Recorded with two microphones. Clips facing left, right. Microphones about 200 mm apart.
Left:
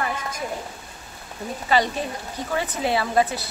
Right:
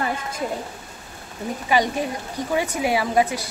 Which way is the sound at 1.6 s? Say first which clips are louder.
Right 1 dB; 15° right (ahead or behind).